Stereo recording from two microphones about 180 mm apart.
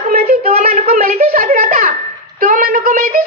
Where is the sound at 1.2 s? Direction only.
50° right (ahead or behind).